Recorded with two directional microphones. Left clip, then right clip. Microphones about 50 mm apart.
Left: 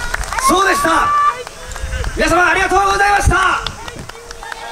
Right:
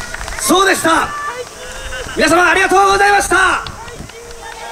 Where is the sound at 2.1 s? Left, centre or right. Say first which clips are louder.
Right 2 dB; right.